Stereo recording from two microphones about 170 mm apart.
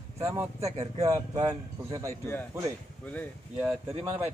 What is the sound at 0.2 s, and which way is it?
Speech, 15° right (ahead or behind).